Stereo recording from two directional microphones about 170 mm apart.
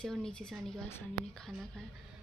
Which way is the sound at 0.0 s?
5° left (ahead or behind).